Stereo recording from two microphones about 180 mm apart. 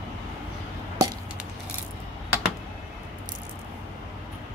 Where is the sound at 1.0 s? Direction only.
20° right (ahead or behind).